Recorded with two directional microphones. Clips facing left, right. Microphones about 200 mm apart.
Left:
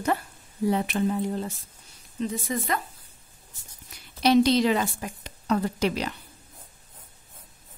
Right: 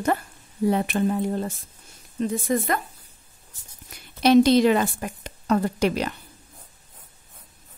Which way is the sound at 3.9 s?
50° right (ahead or behind).